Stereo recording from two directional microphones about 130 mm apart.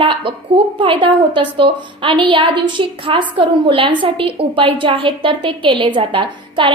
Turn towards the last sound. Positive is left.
turn(degrees=-40)  # may be behind; listen again after turning